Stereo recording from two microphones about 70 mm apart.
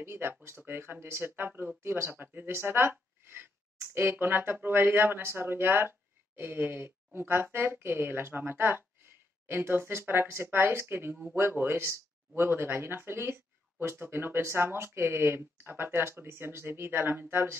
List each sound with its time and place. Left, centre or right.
0.0 s speech: right